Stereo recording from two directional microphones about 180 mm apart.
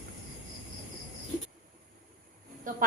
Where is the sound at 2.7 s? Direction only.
45° right (ahead or behind).